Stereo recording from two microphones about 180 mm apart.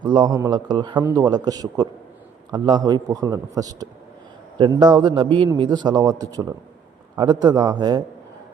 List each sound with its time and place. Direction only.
0.0 s a man's voice: 25° right (ahead or behind)